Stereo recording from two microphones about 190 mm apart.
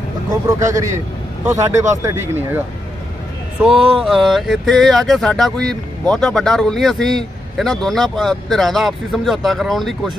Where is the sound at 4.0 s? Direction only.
Centre (ahead or behind).